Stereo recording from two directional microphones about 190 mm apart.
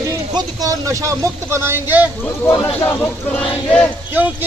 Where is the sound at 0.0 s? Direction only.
20° right (ahead or behind).